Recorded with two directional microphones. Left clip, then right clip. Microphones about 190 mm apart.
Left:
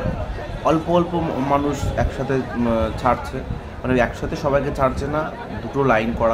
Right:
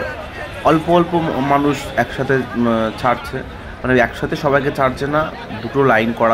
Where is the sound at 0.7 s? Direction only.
15° right (ahead or behind).